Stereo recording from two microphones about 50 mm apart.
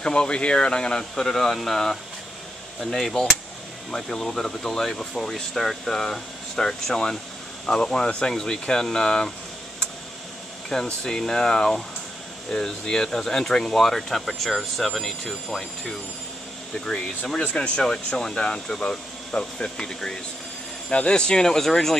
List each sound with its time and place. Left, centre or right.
0.0 s speech: centre
10.7 s speech: centre
17.8 s speech: centre